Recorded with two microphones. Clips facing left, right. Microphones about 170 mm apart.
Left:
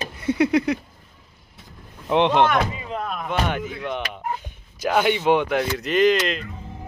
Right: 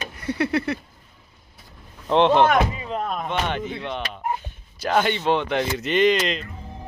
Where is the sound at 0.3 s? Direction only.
15° left (ahead or behind).